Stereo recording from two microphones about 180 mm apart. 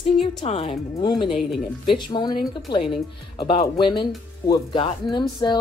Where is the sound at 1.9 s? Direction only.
25° left (ahead or behind).